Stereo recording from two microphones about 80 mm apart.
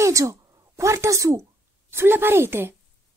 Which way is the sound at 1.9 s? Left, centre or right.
Right.